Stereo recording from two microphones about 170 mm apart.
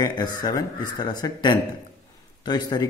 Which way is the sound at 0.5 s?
25° left (ahead or behind).